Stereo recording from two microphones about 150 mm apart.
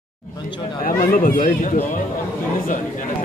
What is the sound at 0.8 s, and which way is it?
Speech, 70° left (ahead or behind).